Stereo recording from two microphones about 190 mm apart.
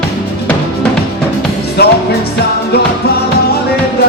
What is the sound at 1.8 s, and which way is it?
Music, 55° left (ahead or behind).